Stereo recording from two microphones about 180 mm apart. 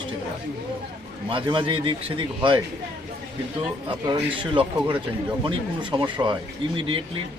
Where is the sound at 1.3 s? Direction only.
30° right (ahead or behind).